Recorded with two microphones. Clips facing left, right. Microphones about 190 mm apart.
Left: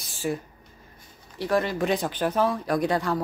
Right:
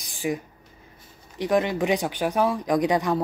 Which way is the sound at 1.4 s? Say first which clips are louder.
Right 2 dB; 15° right (ahead or behind).